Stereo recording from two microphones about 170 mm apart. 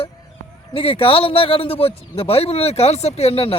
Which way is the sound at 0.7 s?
35° left (ahead or behind).